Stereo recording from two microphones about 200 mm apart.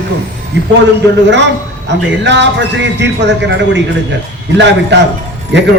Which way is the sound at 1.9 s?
60° right (ahead or behind).